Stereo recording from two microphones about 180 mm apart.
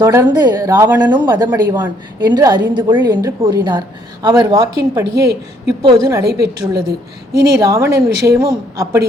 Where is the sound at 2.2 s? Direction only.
25° right (ahead or behind).